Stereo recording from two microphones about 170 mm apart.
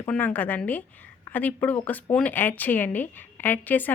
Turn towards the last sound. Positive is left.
turn(degrees=10)  # may be behind; listen again after turning